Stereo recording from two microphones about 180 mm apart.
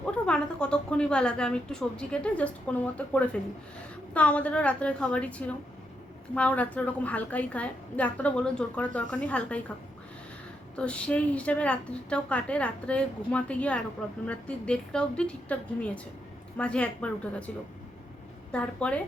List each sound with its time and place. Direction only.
0.0 s a woman's voice: 5° left (ahead or behind)
10.8 s a woman's voice: 5° left (ahead or behind)
16.6 s a woman's voice: 5° left (ahead or behind)
18.5 s a woman's voice: 5° left (ahead or behind)